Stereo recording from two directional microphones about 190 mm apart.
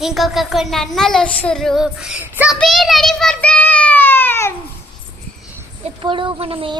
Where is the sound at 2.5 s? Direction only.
Centre (ahead or behind).